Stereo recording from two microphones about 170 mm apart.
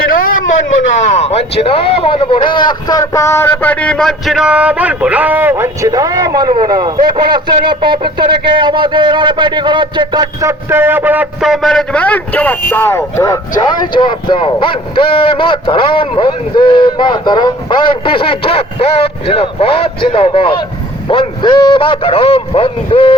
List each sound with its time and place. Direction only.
1.0 s speech: 40° left (ahead or behind); by 10.5 s 25° right (ahead or behind)
10.7 s a man's voice: 10° right (ahead or behind); by 23.1 s 30° left (ahead or behind)